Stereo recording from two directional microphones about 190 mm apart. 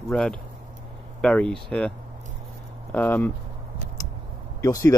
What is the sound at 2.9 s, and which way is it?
Speech, 10° left (ahead or behind).